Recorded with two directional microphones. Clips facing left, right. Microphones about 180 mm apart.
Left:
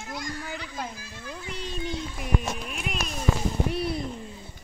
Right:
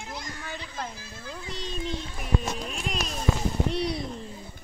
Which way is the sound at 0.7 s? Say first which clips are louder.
Left 1 dB; 10° left (ahead or behind).